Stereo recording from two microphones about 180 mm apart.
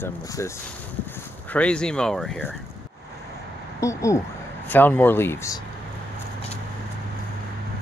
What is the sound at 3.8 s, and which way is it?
Speech, 15° left (ahead or behind).